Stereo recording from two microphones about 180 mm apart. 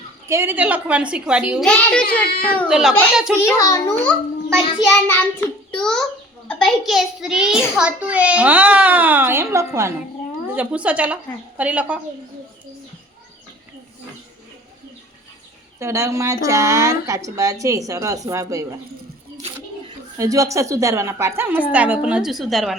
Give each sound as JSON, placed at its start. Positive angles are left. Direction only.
{"t": 0.3, "sound": "a child's voice", "side_deg": -15}
{"t": 2.6, "sound": "a woman's voice", "side_deg": -5}
{"t": 3.4, "sound": "a child's voice", "side_deg": 15}
{"t": 15.8, "sound": "a child's voice", "side_deg": -15}
{"t": 20.1, "sound": "a child's voice", "side_deg": -20}